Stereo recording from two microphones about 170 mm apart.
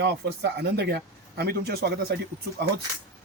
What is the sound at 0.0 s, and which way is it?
Speech, 75° right (ahead or behind).